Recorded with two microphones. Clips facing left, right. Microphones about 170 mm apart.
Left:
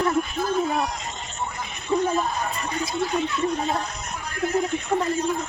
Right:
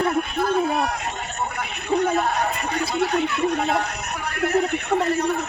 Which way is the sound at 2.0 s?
70° right (ahead or behind).